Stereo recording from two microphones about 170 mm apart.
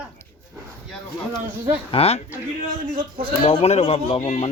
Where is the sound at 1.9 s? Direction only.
35° left (ahead or behind).